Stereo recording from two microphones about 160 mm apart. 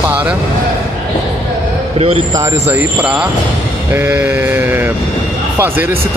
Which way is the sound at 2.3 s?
20° right (ahead or behind).